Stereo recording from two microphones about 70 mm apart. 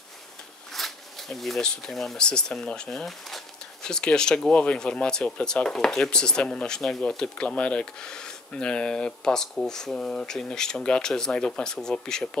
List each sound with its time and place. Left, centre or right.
0.7 s speech: centre